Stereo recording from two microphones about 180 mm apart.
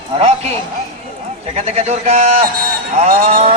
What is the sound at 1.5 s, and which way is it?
A man's voice, 35° right (ahead or behind).